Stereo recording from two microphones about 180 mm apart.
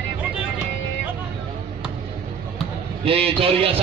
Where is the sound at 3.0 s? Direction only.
30° right (ahead or behind).